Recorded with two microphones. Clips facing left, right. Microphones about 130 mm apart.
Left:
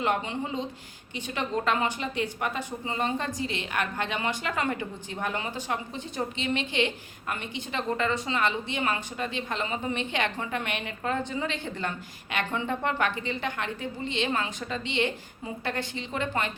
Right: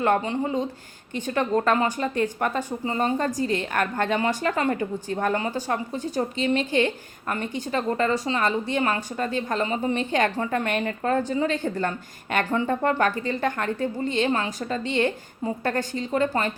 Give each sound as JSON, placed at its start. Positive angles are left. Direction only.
{"t": 0.0, "sound": "a woman's voice", "side_deg": -45}